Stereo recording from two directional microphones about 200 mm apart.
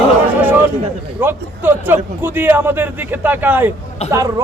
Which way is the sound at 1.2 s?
10° right (ahead or behind).